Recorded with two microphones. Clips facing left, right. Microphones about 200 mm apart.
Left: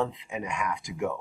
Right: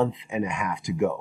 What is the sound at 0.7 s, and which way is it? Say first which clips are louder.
Speech: right 6 dB; 5° right (ahead or behind).